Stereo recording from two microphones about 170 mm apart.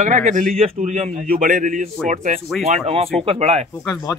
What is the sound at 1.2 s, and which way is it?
A man's voice, 55° right (ahead or behind).